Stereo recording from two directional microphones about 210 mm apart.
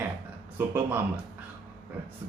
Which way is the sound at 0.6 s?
10° right (ahead or behind).